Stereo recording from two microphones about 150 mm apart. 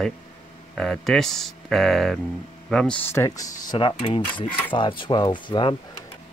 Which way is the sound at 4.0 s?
35° left (ahead or behind).